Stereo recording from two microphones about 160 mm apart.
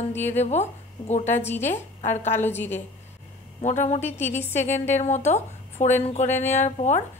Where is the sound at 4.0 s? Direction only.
15° left (ahead or behind).